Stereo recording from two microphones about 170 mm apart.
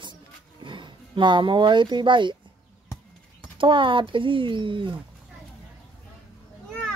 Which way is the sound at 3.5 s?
30° right (ahead or behind).